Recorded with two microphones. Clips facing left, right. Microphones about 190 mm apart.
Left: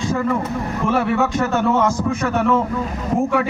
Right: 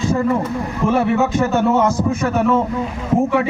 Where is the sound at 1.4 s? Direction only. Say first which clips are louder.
Right 2 dB; 5° right (ahead or behind).